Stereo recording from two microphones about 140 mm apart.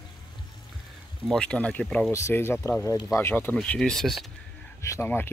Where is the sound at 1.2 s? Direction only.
5° left (ahead or behind).